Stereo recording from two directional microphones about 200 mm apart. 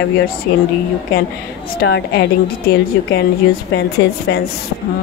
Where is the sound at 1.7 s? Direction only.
55° left (ahead or behind).